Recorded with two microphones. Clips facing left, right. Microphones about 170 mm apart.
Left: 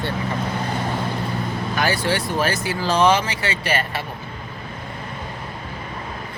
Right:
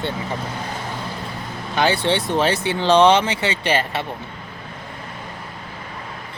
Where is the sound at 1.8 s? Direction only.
25° right (ahead or behind).